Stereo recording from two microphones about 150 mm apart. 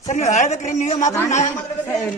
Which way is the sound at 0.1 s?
50° left (ahead or behind).